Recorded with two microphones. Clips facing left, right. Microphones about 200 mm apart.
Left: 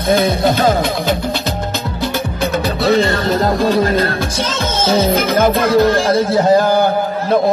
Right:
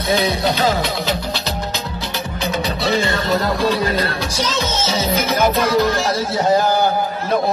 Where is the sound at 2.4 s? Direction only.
55° left (ahead or behind).